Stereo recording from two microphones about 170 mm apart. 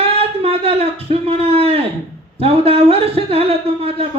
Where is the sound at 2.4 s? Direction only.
35° right (ahead or behind).